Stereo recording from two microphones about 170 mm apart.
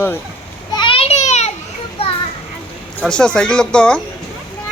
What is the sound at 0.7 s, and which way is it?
Children playing, 30° left (ahead or behind).